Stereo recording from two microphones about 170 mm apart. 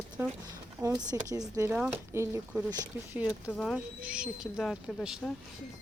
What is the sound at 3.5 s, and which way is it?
Speech, 5° left (ahead or behind).